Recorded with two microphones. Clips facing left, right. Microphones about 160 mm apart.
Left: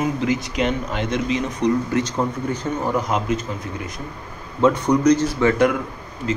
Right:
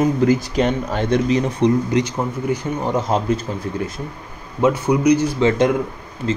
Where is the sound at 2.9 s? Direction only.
30° right (ahead or behind).